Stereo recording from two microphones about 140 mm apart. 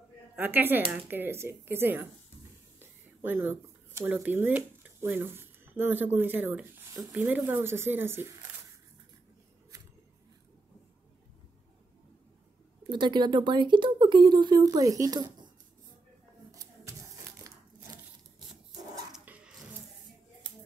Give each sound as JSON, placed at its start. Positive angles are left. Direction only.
{"t": 0.4, "sound": "speech", "side_deg": -15}
{"t": 12.9, "sound": "speech", "side_deg": -35}
{"t": 19.1, "sound": "filing", "side_deg": -10}